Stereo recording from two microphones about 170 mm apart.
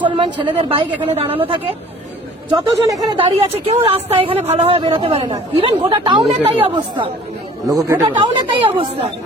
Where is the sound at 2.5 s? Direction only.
20° right (ahead or behind).